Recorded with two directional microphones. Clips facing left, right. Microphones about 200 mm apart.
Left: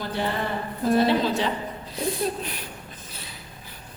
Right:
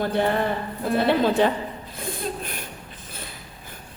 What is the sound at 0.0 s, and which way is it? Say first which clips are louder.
A woman's voice: right 5 dB; 55° right (ahead or behind).